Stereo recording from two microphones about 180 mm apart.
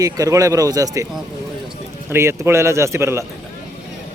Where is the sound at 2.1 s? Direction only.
15° right (ahead or behind).